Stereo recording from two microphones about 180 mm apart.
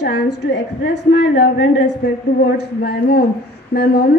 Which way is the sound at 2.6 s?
60° left (ahead or behind).